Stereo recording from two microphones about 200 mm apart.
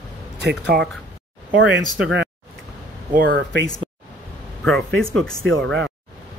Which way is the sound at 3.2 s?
60° right (ahead or behind).